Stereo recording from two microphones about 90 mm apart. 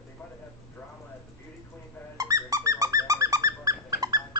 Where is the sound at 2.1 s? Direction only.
40° right (ahead or behind).